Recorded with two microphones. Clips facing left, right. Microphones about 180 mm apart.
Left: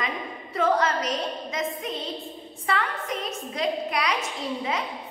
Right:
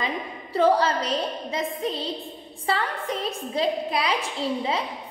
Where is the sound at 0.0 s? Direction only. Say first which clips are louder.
Right 2 dB; 30° right (ahead or behind).